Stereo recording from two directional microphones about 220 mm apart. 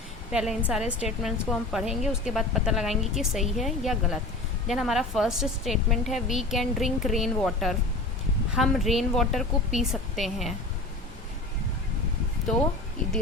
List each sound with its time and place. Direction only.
0.3 s a woman's voice: 5° right (ahead or behind)